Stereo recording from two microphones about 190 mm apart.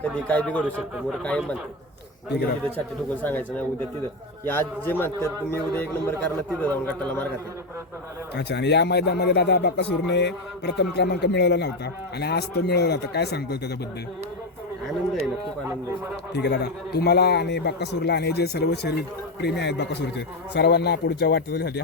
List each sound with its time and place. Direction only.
0.0 s a man's voice: 5° left (ahead or behind)
0.6 s a man's voice: 5° right (ahead or behind)
3.2 s a man's voice: 10° left (ahead or behind)
8.4 s speech: 65° left (ahead or behind)
16.3 s speech: 60° left (ahead or behind)